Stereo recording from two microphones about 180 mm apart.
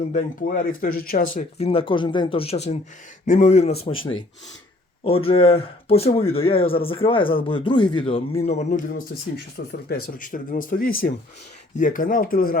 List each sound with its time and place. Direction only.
0.1 s speech: 45° left (ahead or behind)
1.5 s speech: 35° left (ahead or behind)
9.6 s speech: 55° left (ahead or behind)